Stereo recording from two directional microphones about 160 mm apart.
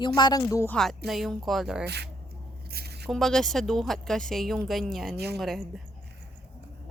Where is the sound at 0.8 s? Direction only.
Centre (ahead or behind).